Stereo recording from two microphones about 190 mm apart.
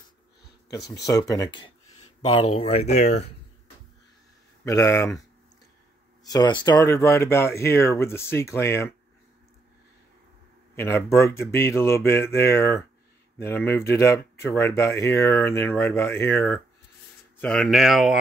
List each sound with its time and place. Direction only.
0.7 s speech: 20° left (ahead or behind); by 3.3 s 35° left (ahead or behind)
4.6 s speech: 15° left (ahead or behind)
6.2 s speech: 20° left (ahead or behind)
10.8 s speech: 15° left (ahead or behind)